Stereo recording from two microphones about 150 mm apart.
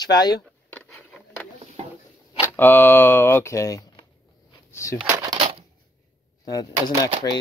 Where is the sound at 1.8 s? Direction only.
45° right (ahead or behind).